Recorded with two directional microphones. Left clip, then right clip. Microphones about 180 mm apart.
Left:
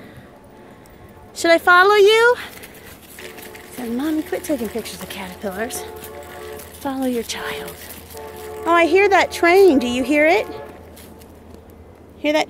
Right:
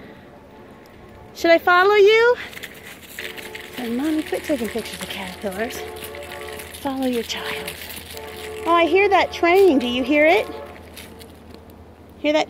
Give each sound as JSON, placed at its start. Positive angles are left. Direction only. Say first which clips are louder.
{"t": 1.3, "sound": "a woman's voice", "louder": "left 2 dB", "side_deg": 5}
{"t": 3.2, "sound": "a sound", "louder": "right 4 dB", "side_deg": 0}
{"t": 4.0, "sound": "a woman's voice", "louder": "left 1 dB", "side_deg": 10}
{"t": 12.2, "sound": "speech", "louder": "left 1 dB", "side_deg": 5}